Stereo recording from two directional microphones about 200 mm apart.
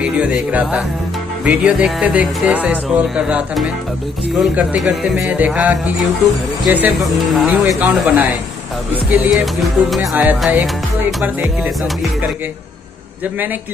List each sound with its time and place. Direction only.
0.0 s speech: 5° right (ahead or behind)
8.9 s music: 5° right (ahead or behind)